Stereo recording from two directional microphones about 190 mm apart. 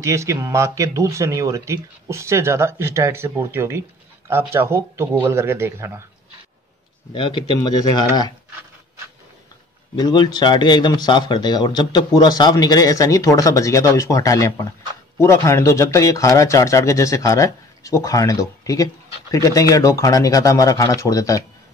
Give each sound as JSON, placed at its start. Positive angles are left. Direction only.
{"t": 0.0, "sound": "speech", "side_deg": -15}
{"t": 7.1, "sound": "speech", "side_deg": 25}
{"t": 9.9, "sound": "speech", "side_deg": 20}